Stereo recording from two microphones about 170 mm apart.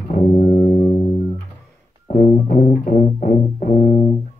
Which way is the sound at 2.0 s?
50° left (ahead or behind).